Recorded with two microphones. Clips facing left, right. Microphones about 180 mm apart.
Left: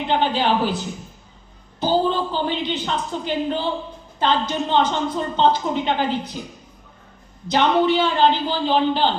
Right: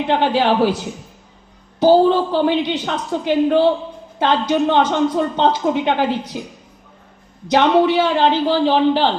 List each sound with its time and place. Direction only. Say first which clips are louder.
0.1 s a woman's voice: right 3 dB; 75° right (ahead or behind)
1.8 s a woman's voice: right 8 dB; 75° right (ahead or behind)
7.5 s a man's voice: right 4 dB; 75° right (ahead or behind)